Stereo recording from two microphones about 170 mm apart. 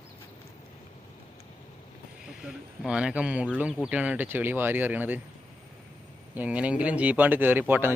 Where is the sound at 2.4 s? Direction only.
5° right (ahead or behind).